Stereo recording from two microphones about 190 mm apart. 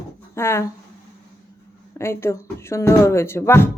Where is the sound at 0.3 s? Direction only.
15° left (ahead or behind).